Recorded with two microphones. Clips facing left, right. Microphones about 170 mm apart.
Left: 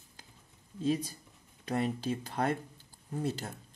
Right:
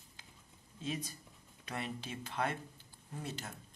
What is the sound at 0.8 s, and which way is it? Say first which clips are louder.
Speech: left 10 dB; 35° left (ahead or behind).